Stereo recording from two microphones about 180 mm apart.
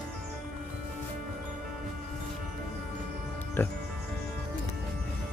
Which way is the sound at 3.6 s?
10° left (ahead or behind).